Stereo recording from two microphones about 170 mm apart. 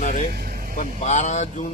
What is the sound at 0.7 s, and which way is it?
Speech, 45° left (ahead or behind).